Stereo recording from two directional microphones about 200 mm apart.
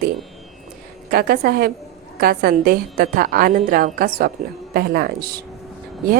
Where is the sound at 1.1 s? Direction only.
50° right (ahead or behind).